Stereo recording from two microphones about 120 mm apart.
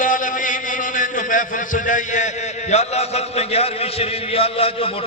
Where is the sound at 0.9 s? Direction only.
90° left.